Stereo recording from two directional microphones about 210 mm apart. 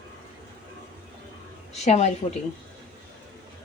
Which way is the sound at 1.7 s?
30° left (ahead or behind).